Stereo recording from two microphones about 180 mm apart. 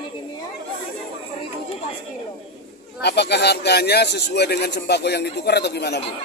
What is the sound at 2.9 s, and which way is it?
Speech, 70° left (ahead or behind).